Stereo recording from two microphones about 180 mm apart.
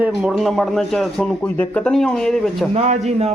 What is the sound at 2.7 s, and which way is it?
Speech, 35° right (ahead or behind).